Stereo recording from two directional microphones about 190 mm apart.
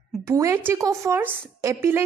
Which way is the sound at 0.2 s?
15° right (ahead or behind).